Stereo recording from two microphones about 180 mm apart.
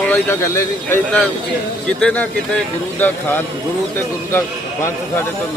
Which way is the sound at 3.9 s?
10° left (ahead or behind).